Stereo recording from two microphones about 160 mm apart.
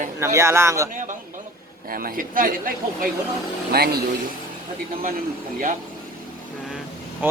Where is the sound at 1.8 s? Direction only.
65° right (ahead or behind).